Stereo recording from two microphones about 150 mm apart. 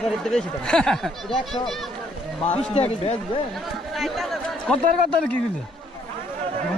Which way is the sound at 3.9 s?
Centre (ahead or behind).